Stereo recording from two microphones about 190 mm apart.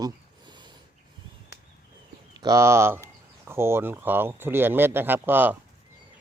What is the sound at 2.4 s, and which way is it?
Speech, 15° right (ahead or behind).